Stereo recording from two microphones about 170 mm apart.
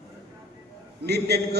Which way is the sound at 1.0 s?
75° right (ahead or behind).